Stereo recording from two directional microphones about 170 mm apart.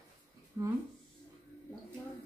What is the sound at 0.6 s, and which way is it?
Speech, 20° right (ahead or behind).